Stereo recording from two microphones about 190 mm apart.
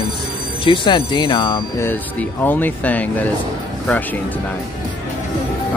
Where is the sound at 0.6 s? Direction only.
25° left (ahead or behind).